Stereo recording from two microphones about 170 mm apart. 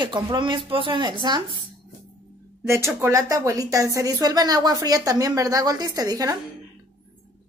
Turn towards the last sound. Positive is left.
turn(degrees=-20)  # may be behind; listen again after turning